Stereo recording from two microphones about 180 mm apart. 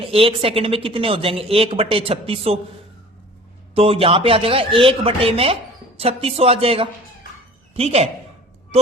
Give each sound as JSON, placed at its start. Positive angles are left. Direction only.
{"t": 0.0, "sound": "speech", "side_deg": -30}
{"t": 3.8, "sound": "speech", "side_deg": -30}